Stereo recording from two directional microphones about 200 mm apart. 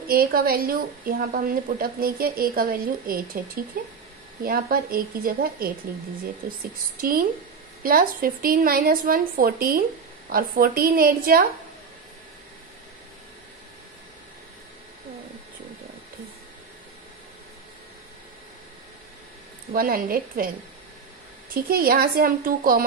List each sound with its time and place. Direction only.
0.0 s a woman's voice: 50° right (ahead or behind)
7.0 s a woman's voice: 45° right (ahead or behind)
19.7 s a woman's voice: 45° right (ahead or behind)
21.5 s a woman's voice: 50° right (ahead or behind)